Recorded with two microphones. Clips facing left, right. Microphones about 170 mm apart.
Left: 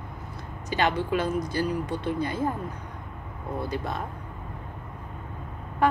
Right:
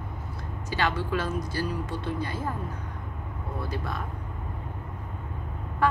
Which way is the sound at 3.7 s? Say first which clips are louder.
Left 1 dB; 20° left (ahead or behind).